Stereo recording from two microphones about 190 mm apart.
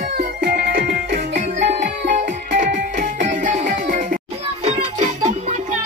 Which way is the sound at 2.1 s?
40° right (ahead or behind).